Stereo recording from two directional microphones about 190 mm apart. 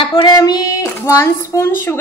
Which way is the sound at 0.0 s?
25° left (ahead or behind).